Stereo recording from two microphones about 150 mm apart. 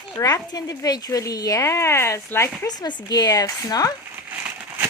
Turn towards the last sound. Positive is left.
turn(degrees=-10)  # may be behind; listen again after turning